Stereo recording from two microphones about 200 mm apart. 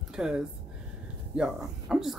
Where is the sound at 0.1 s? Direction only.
5° right (ahead or behind).